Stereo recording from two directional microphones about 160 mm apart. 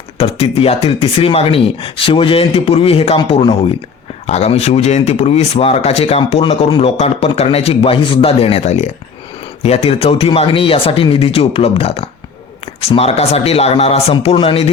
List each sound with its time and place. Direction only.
0.2 s speech: 35° left (ahead or behind)